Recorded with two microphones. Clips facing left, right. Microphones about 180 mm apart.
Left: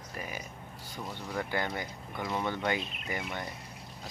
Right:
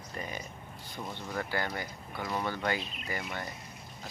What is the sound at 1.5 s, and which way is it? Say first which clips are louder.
Speech: left 1 dB; 20° left (ahead or behind).